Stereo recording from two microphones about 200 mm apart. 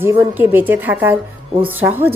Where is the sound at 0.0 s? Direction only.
10° right (ahead or behind).